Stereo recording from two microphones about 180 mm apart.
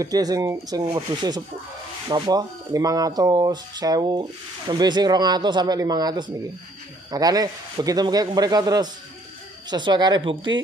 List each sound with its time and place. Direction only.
0.0 s speech: 20° right (ahead or behind)